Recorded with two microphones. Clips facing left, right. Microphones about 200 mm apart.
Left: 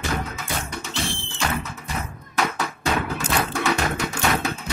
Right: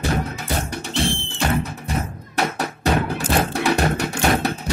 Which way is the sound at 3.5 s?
65° right (ahead or behind).